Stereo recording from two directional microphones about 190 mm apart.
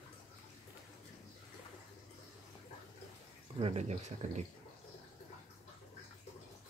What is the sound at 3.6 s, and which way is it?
Speech, 35° right (ahead or behind).